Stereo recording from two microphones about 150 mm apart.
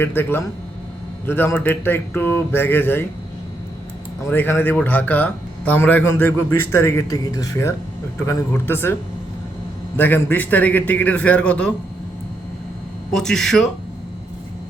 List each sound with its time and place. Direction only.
0.0 s speech: 15° left (ahead or behind)
4.2 s speech: 15° left (ahead or behind)
10.0 s speech: 10° left (ahead or behind)
13.1 s speech: 5° left (ahead or behind)